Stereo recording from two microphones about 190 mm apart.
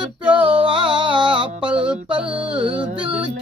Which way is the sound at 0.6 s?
25° right (ahead or behind).